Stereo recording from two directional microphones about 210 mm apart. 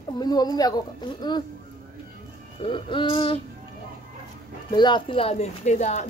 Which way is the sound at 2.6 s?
25° left (ahead or behind).